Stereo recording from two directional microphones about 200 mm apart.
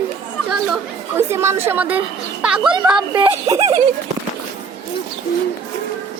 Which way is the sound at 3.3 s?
15° right (ahead or behind).